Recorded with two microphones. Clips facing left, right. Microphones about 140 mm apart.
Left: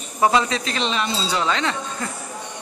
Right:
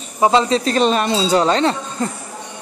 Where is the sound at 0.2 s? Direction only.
30° right (ahead or behind).